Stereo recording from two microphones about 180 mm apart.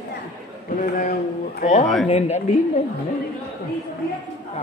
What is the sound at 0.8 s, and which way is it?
Speech, 50° left (ahead or behind).